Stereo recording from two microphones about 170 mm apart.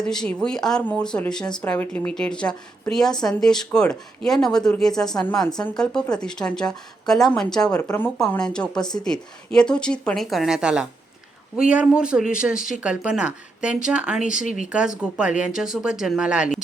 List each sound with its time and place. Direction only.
0.0 s speech: 5° left (ahead or behind)
14.3 s speech: 50° left (ahead or behind)
14.7 s speech: 5° right (ahead or behind)